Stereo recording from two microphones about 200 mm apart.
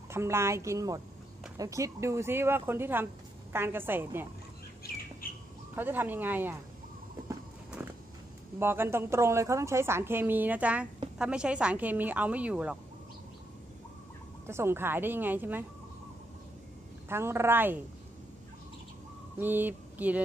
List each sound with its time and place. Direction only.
0.1 s a woman's voice: 15° right (ahead or behind)
5.2 s bird: 45° left (ahead or behind)
5.8 s a woman's voice: 10° right (ahead or behind)
8.5 s a woman's voice: 10° right (ahead or behind)
14.4 s a woman's voice: 15° right (ahead or behind)
17.1 s a woman's voice: 10° right (ahead or behind)
19.3 s mantra: 10° right (ahead or behind)